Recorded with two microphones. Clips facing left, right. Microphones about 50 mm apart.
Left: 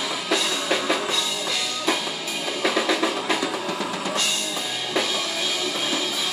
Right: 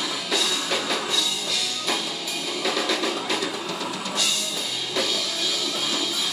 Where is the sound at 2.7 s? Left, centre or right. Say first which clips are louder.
Left 3 dB; centre.